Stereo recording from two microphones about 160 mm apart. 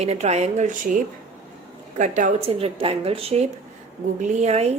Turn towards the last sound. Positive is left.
turn(degrees=-40)  # may be behind; listen again after turning